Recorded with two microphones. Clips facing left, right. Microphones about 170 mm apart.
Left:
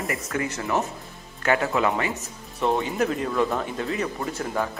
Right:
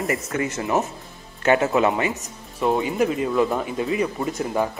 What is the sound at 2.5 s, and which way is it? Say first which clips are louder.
Speech: right 3 dB; 5° right (ahead or behind).